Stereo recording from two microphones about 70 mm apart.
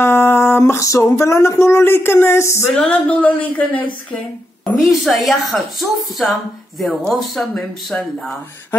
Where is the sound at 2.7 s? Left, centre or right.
Centre.